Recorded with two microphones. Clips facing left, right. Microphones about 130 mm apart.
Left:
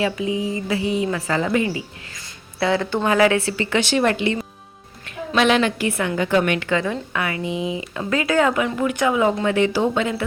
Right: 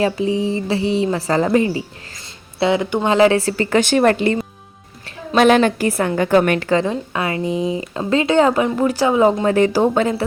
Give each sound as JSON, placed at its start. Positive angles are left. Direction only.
{"t": 0.0, "sound": "speech", "side_deg": -35}
{"t": 2.6, "sound": "a woman's voice", "side_deg": -20}
{"t": 6.8, "sound": "speech", "side_deg": -25}